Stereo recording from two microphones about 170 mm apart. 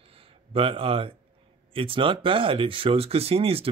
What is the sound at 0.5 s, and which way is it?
Speech, 35° right (ahead or behind).